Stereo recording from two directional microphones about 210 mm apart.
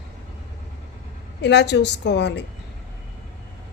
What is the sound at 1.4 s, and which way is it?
A woman's voice, 55° left (ahead or behind).